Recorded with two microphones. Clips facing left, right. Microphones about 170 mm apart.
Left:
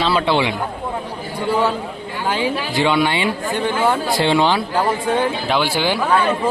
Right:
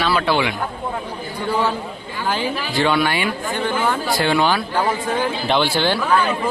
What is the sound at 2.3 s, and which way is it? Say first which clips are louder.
Speech: left 2 dB; 20° left (ahead or behind).